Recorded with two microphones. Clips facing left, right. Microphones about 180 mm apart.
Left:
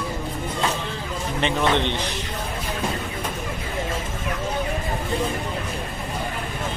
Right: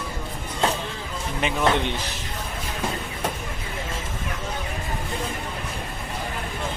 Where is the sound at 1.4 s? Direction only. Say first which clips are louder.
Left 1 dB; 5° right (ahead or behind).